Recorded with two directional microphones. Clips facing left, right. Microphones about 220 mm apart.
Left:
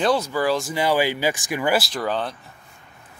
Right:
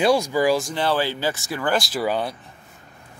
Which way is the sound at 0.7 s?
10° left (ahead or behind).